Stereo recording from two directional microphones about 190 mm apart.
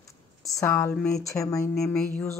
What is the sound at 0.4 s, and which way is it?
Speech, 15° left (ahead or behind).